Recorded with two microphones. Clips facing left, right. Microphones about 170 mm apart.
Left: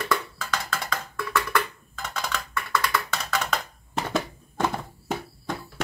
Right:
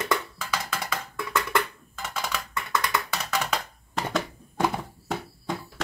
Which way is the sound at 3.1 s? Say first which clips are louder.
Even; 10° right (ahead or behind).